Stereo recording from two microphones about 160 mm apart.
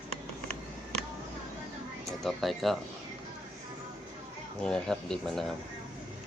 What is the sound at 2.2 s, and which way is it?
Speech, centre (ahead or behind).